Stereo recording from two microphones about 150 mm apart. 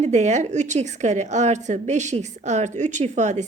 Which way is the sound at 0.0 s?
50° right (ahead or behind).